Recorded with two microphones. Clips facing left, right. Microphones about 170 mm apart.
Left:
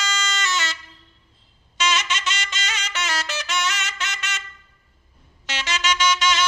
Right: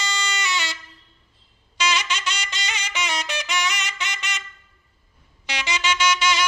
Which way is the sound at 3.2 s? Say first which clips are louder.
Even; 15° right (ahead or behind).